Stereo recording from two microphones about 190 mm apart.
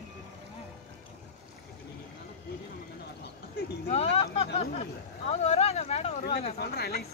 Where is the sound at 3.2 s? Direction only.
60° left (ahead or behind).